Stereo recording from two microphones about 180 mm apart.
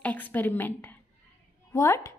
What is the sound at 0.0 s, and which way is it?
A woman's voice, 10° left (ahead or behind).